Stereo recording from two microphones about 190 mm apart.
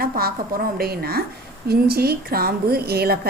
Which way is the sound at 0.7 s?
55° right (ahead or behind).